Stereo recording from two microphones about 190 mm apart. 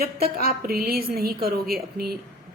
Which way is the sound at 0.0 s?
50° right (ahead or behind).